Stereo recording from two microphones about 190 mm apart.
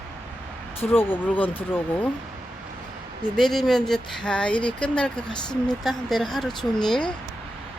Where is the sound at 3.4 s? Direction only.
Centre (ahead or behind).